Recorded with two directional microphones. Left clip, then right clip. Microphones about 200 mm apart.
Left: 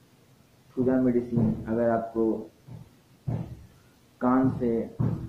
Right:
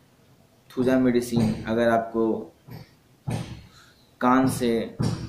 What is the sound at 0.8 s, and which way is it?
Speech, 15° right (ahead or behind).